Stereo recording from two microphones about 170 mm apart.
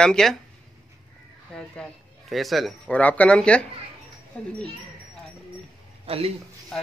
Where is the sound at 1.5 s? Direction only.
5° left (ahead or behind).